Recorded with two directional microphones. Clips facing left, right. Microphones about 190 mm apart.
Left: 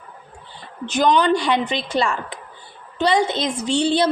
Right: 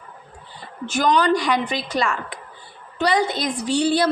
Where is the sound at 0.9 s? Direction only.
20° left (ahead or behind).